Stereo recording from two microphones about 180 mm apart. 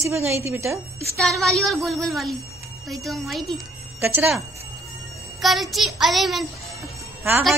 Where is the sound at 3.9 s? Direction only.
15° right (ahead or behind).